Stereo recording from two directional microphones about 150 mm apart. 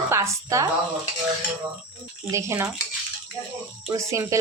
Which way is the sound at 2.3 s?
20° right (ahead or behind).